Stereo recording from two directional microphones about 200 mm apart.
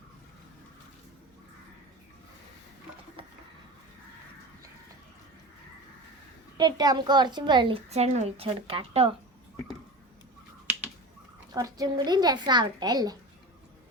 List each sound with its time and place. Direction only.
3.2 s a sound: 25° right (ahead or behind)
6.6 s a child's voice: 20° right (ahead or behind)
11.5 s a child's voice: 20° right (ahead or behind)